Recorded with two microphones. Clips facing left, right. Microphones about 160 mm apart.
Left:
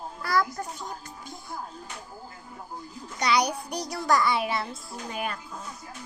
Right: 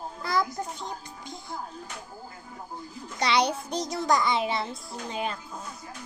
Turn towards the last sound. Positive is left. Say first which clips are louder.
# right 1 dB
turn(degrees=-25)  # may be behind; listen again after turning